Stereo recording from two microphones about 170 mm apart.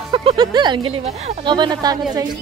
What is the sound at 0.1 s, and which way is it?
Speech, 30° right (ahead or behind).